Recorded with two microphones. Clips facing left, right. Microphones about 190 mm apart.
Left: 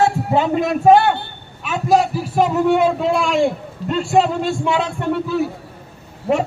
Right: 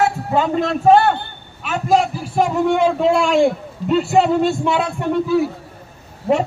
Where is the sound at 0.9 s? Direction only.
5° left (ahead or behind).